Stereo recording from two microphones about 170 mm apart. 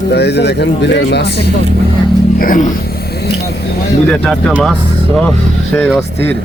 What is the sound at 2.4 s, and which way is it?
Music, 55° left (ahead or behind).